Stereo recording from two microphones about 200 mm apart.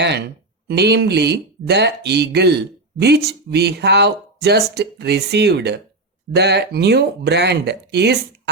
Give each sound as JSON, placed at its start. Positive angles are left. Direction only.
{"t": 0.7, "sound": "speech", "side_deg": -55}